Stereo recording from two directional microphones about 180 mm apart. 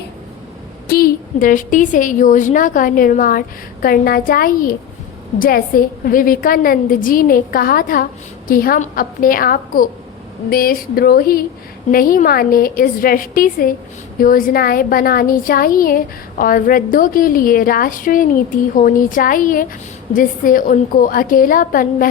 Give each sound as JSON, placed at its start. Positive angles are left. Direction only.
{"t": 0.9, "sound": "a woman's voice", "side_deg": 55}
{"t": 10.5, "sound": "a sound", "side_deg": 55}
{"t": 11.9, "sound": "a woman's voice", "side_deg": 50}